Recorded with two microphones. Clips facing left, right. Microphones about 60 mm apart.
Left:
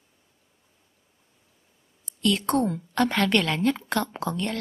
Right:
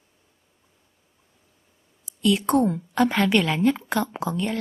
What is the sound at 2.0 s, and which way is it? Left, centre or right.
A woman's voice, centre.